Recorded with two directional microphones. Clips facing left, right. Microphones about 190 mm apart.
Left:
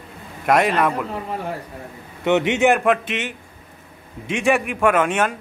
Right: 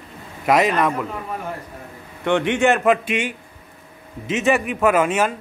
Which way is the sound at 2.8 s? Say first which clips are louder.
Right 2 dB; 10° right (ahead or behind).